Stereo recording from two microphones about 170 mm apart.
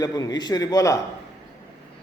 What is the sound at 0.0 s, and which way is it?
Speech, 20° left (ahead or behind).